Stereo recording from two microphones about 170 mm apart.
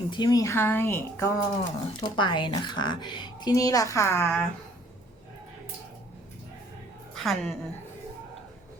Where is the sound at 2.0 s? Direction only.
25° left (ahead or behind).